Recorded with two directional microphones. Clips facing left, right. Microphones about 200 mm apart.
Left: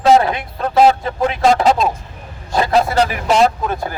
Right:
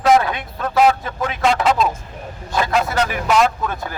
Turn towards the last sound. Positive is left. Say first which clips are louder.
# left 4 dB
turn(degrees=35)  # may be behind; listen again after turning